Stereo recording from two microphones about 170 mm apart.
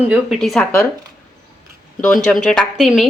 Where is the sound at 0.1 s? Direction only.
Centre (ahead or behind).